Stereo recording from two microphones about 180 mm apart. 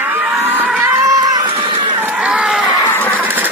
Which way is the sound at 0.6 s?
5° right (ahead or behind).